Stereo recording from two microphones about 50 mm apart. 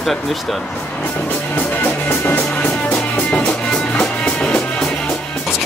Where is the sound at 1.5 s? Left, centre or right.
Left.